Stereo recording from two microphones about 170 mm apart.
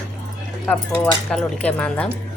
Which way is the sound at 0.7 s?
5° left (ahead or behind).